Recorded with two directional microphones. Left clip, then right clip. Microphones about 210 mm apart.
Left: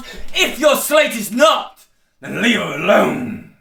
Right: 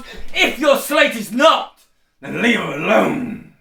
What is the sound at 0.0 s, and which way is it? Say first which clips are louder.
A man's voice: right 1 dB; 40° left (ahead or behind).